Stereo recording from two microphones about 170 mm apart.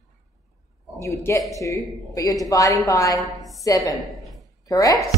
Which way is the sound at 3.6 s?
20° left (ahead or behind).